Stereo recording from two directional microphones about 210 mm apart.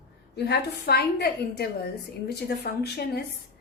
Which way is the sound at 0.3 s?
50° left (ahead or behind).